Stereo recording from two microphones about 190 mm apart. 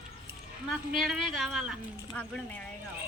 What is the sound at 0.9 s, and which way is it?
Speech, centre (ahead or behind).